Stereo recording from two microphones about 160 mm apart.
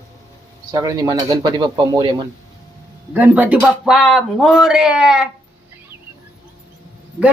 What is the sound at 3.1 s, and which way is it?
Speech, 10° right (ahead or behind).